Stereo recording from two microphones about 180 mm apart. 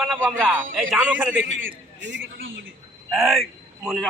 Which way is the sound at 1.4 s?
90° right.